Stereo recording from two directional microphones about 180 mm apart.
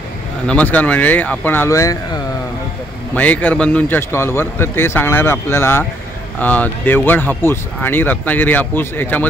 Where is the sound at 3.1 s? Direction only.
10° left (ahead or behind).